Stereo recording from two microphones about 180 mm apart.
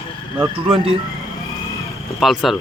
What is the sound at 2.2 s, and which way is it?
Speech, centre (ahead or behind).